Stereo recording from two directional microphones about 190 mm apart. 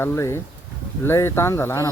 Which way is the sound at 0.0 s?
15° left (ahead or behind).